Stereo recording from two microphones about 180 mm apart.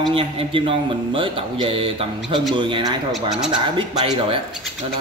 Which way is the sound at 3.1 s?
5° right (ahead or behind).